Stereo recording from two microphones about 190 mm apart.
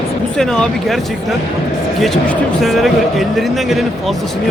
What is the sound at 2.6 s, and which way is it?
Speech, centre (ahead or behind).